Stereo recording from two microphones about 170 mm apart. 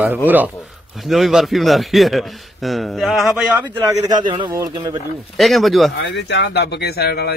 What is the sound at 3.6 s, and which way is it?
Speech, 25° right (ahead or behind).